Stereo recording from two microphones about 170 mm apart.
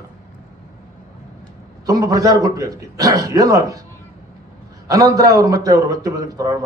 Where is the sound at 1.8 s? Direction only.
20° right (ahead or behind).